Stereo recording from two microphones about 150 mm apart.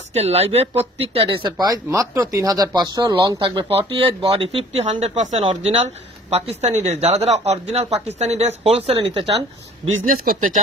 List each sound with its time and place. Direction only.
0.1 s speech: 45° right (ahead or behind)
10.0 s speech: 75° right (ahead or behind)